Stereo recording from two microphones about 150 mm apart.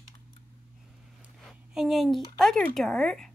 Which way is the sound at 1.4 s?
Centre (ahead or behind).